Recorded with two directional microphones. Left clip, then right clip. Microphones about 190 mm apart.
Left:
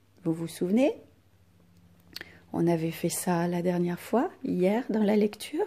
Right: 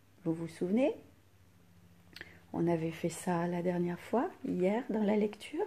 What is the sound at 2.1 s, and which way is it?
Speech, 35° left (ahead or behind).